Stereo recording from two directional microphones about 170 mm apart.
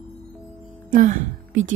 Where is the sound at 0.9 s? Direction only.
50° right (ahead or behind).